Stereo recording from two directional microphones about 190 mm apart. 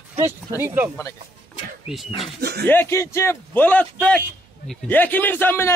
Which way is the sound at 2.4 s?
55° right (ahead or behind).